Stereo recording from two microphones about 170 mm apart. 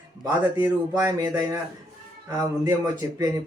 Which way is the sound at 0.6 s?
15° right (ahead or behind).